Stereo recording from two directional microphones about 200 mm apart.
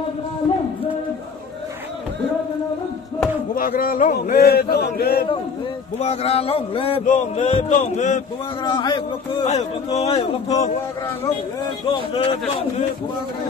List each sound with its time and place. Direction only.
3.5 s speech: 45° left (ahead or behind)
5.9 s a man's voice: 30° left (ahead or behind)
8.6 s a man's voice: 20° left (ahead or behind)
11.9 s speech: 25° left (ahead or behind)